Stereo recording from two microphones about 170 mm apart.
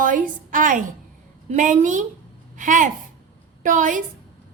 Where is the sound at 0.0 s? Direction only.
50° right (ahead or behind).